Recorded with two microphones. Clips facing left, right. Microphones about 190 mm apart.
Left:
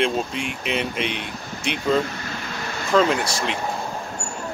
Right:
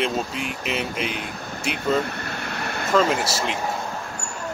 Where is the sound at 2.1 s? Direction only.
60° right (ahead or behind).